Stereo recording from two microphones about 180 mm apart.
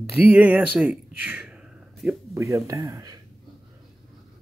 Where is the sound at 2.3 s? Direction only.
15° right (ahead or behind).